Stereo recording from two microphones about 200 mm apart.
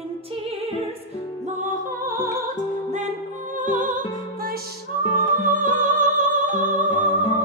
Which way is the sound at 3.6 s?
40° right (ahead or behind).